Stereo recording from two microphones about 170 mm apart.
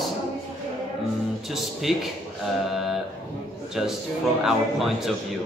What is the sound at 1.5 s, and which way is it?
A man's voice, centre (ahead or behind).